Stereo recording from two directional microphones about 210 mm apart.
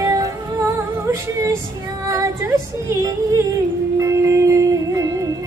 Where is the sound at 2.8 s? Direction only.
15° right (ahead or behind).